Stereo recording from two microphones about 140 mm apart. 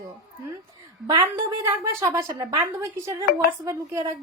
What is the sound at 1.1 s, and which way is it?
A woman's voice, 25° right (ahead or behind).